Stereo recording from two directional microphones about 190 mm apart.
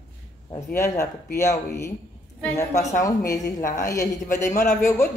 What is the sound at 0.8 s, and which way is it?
A woman's voice, 15° left (ahead or behind).